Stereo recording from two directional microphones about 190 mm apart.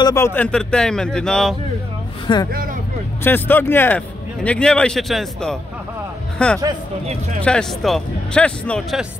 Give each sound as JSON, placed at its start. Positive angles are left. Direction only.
{"t": 0.0, "sound": "speech", "side_deg": 15}
{"t": 2.3, "sound": "speech", "side_deg": 25}
{"t": 3.3, "sound": "a man's voice", "side_deg": 10}